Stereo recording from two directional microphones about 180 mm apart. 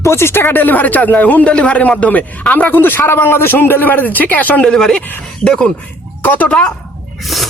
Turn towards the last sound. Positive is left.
turn(degrees=0)  # may be behind; listen again after turning